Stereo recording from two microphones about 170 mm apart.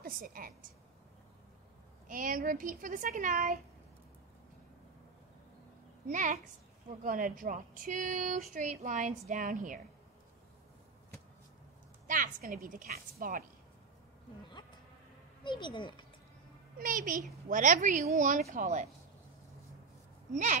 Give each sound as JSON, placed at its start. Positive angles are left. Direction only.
{"t": 0.0, "sound": "a woman's voice", "side_deg": -55}
{"t": 2.0, "sound": "speech", "side_deg": -55}
{"t": 6.0, "sound": "speech", "side_deg": -50}
{"t": 12.1, "sound": "a woman's voice", "side_deg": -50}
{"t": 15.4, "sound": "speech", "side_deg": 25}
{"t": 16.7, "sound": "speech", "side_deg": -55}